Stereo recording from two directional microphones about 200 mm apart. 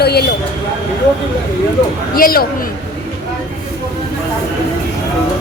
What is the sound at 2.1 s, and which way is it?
Speech, 45° left (ahead or behind).